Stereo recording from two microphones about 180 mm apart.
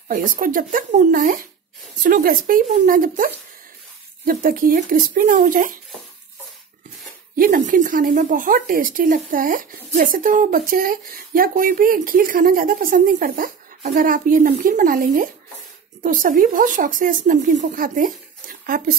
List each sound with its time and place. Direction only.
0.1 s speech: 50° right (ahead or behind)
7.3 s speech: 50° right (ahead or behind)